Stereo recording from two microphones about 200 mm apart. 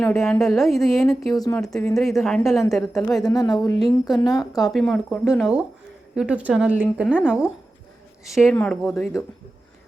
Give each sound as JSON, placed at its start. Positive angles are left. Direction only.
{"t": 0.0, "sound": "a woman's voice", "side_deg": 5}
{"t": 1.3, "sound": "speech", "side_deg": 15}
{"t": 1.6, "sound": "a woman's voice", "side_deg": 0}
{"t": 3.2, "sound": "speech", "side_deg": 20}
{"t": 3.5, "sound": "a woman's voice", "side_deg": 0}
{"t": 4.2, "sound": "speech", "side_deg": 20}
{"t": 4.6, "sound": "a woman's voice", "side_deg": 0}